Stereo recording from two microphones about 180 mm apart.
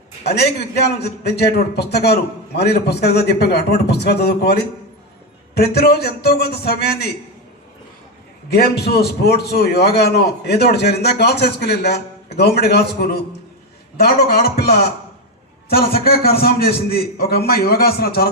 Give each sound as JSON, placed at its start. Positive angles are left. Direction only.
{"t": 0.3, "sound": "a man's voice", "side_deg": 65}
{"t": 5.7, "sound": "a man's voice", "side_deg": 60}
{"t": 8.4, "sound": "a man's voice", "side_deg": 60}